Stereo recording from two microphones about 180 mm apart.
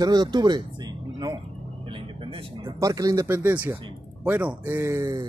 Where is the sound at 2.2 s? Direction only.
30° right (ahead or behind).